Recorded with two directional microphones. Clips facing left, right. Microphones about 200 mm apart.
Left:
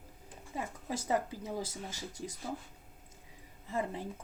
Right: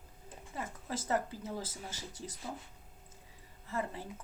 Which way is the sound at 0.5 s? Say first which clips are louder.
Left 2 dB; 15° left (ahead or behind).